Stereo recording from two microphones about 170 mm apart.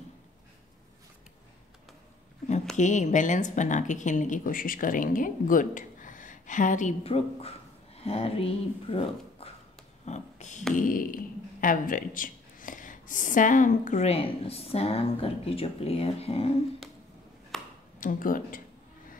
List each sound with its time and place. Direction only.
2.8 s a woman's voice: 45° left (ahead or behind)
7.0 s speech: 35° left (ahead or behind)
10.0 s a sound: 45° left (ahead or behind)
10.7 s beatboxing: 55° left (ahead or behind)
11.6 s speech: 55° left (ahead or behind); by 16.5 s 35° left (ahead or behind)
17.5 s a sound: centre (ahead or behind)
18.0 s a woman's voice: 55° left (ahead or behind)